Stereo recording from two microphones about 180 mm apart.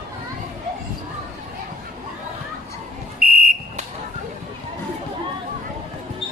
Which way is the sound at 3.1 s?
55° right (ahead or behind).